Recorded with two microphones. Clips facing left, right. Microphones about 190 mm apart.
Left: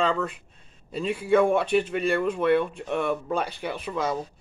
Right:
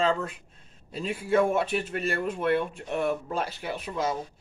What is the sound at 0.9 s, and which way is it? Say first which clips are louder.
A man's voice: left 3 dB; centre (ahead or behind).